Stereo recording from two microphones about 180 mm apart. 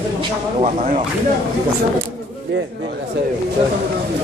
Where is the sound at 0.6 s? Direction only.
40° right (ahead or behind).